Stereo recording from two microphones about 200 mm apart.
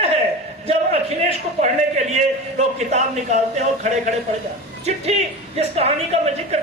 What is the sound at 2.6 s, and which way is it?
Speech, 35° right (ahead or behind).